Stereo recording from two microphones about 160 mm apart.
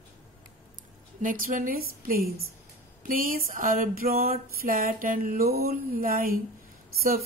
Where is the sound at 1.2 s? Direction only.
60° right (ahead or behind).